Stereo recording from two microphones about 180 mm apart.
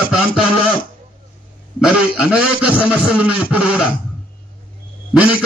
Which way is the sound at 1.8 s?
5° right (ahead or behind).